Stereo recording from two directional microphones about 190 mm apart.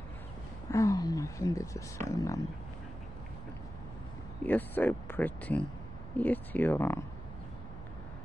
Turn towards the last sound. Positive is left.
turn(degrees=10)  # may be behind; listen again after turning